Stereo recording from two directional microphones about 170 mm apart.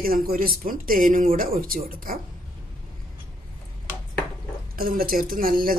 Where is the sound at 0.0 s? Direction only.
60° right (ahead or behind).